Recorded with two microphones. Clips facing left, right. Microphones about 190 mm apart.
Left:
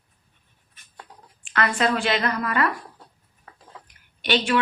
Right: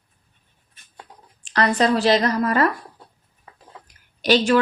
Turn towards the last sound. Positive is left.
turn(degrees=-40)  # may be behind; listen again after turning